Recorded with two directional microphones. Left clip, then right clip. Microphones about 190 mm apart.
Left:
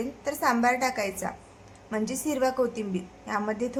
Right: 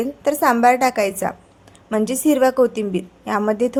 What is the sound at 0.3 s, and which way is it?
A woman's voice, 45° right (ahead or behind).